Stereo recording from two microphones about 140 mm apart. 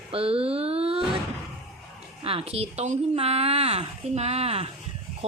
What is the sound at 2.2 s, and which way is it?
Speech, 45° right (ahead or behind).